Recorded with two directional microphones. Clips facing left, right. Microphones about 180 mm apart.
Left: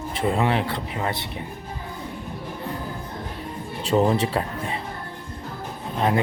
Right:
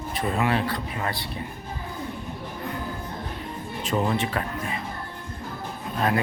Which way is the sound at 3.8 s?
35° left (ahead or behind).